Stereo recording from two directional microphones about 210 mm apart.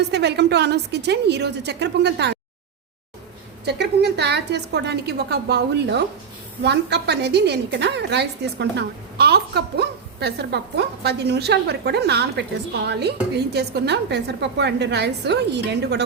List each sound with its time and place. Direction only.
0.1 s a woman's voice: 55° right (ahead or behind)
3.7 s a woman's voice: 55° right (ahead or behind)